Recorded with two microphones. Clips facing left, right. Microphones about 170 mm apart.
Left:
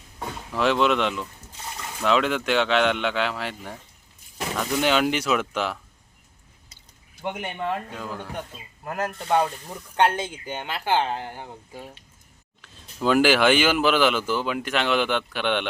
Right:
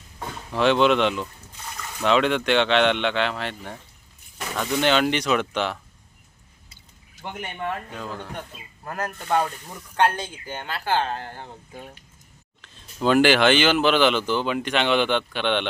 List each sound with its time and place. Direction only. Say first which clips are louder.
0.5 s speech: right 3 dB; centre (ahead or behind)
7.3 s speech: left 2 dB; 15° left (ahead or behind)
7.9 s speech: even; 10° left (ahead or behind)